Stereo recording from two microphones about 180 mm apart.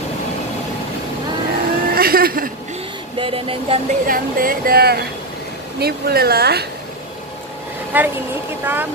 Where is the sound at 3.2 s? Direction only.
30° right (ahead or behind).